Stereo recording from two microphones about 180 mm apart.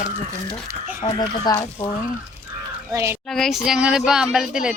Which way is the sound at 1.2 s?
20° left (ahead or behind).